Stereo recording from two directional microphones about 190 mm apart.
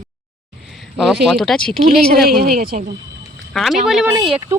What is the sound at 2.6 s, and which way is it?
Speech, 50° right (ahead or behind).